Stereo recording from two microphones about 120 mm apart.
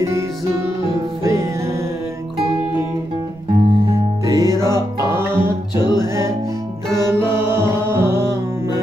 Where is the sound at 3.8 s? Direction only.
25° right (ahead or behind).